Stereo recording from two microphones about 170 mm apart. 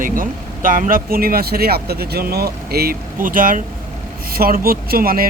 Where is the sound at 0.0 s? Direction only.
55° right (ahead or behind).